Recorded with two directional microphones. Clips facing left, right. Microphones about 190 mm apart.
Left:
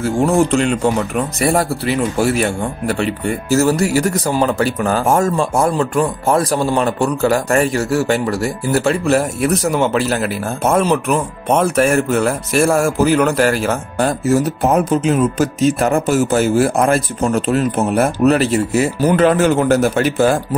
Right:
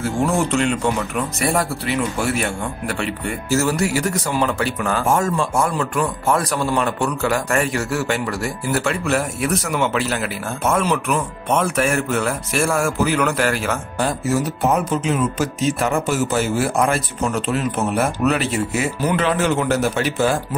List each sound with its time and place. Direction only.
0.5 s speech: 40° left (ahead or behind)